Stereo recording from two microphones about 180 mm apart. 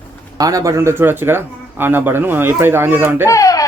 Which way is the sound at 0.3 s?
20° right (ahead or behind).